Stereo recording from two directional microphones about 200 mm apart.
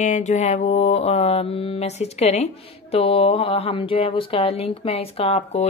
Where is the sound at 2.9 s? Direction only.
30° left (ahead or behind).